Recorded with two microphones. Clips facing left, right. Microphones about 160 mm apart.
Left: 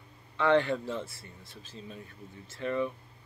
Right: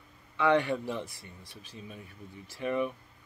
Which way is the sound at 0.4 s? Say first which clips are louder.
Left 1 dB; 15° right (ahead or behind).